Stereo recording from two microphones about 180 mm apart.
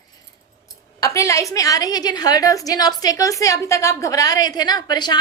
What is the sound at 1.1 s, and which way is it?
A woman's voice, 15° left (ahead or behind).